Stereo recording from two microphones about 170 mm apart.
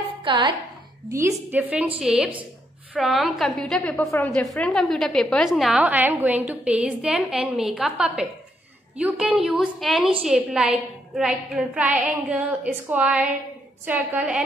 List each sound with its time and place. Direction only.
0.2 s a woman's voice: 30° right (ahead or behind)
1.1 s a woman's voice: 15° right (ahead or behind)